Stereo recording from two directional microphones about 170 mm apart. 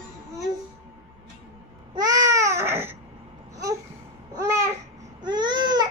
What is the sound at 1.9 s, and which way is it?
Babbling, 20° right (ahead or behind).